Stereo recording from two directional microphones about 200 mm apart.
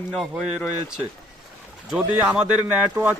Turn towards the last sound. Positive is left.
turn(degrees=-5)  # may be behind; listen again after turning